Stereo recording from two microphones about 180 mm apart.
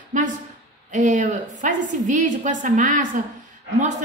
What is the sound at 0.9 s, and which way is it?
A woman's voice, 45° right (ahead or behind).